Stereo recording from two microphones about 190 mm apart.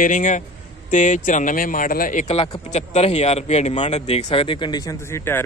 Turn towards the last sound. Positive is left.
turn(degrees=15)  # may be behind; listen again after turning